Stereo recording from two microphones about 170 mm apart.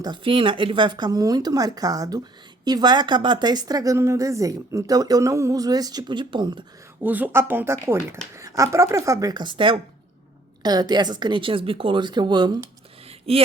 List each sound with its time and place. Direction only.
0.0 s speech: 30° right (ahead or behind)
7.0 s speech: 10° right (ahead or behind)
13.1 s a sound: 35° right (ahead or behind)